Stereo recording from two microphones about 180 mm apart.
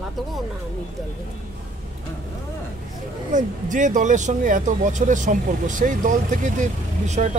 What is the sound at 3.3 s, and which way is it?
Speech, 45° right (ahead or behind).